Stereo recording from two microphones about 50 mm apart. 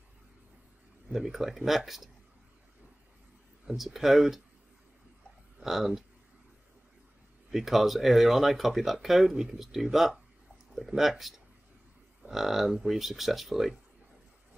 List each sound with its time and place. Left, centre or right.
1.1 s speech: centre
3.7 s speech: centre
5.6 s speech: centre
7.5 s speech: centre